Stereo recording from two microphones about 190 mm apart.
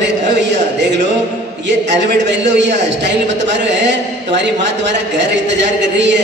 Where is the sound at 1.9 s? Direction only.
70° right (ahead or behind).